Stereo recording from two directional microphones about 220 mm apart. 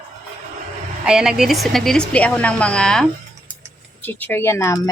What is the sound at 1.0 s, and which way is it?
A woman's voice, 5° right (ahead or behind).